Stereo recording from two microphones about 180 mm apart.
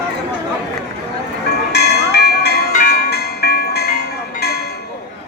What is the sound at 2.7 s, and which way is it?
Ice cream truck, 60° left (ahead or behind).